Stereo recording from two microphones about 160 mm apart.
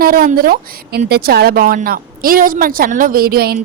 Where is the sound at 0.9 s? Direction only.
80° right.